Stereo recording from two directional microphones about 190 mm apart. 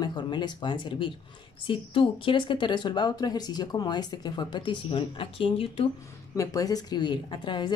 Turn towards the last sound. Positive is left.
turn(degrees=25)  # may be behind; listen again after turning